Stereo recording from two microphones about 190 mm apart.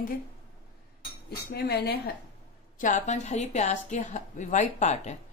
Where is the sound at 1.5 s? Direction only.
60° left (ahead or behind).